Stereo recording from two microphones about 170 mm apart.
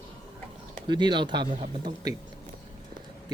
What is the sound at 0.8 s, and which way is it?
Speech, 25° right (ahead or behind).